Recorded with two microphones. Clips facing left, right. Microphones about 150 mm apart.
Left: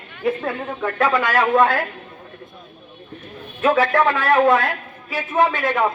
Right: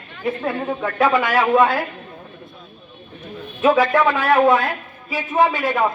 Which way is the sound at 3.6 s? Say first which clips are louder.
Right 1 dB; 10° right (ahead or behind).